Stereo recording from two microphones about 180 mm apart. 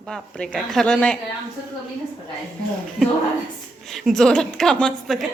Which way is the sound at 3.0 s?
Centre (ahead or behind).